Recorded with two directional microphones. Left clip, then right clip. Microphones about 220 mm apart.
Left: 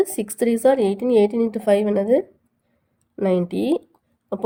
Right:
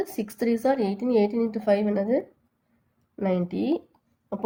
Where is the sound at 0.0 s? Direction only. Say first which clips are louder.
Left 7 dB; 35° left (ahead or behind).